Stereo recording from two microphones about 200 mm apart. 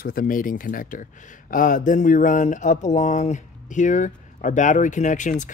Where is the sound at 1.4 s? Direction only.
40° left (ahead or behind).